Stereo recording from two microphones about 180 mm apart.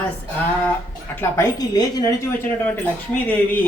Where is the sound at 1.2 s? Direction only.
15° left (ahead or behind).